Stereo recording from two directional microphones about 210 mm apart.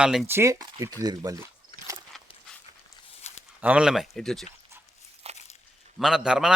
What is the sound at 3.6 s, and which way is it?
Speech, 5° right (ahead or behind).